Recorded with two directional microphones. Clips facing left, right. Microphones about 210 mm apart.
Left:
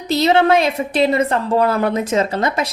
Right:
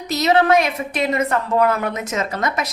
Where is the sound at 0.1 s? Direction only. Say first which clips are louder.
Left 2 dB; 30° left (ahead or behind).